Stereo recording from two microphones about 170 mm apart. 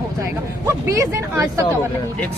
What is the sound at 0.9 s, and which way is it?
Speech, 20° right (ahead or behind).